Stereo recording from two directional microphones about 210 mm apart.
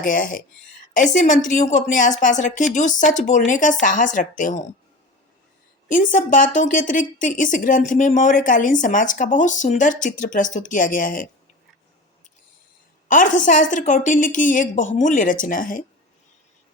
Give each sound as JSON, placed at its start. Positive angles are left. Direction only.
{"t": 0.0, "sound": "a woman's voice", "side_deg": 40}
{"t": 5.9, "sound": "a woman's voice", "side_deg": 40}
{"t": 13.1, "sound": "a woman's voice", "side_deg": 40}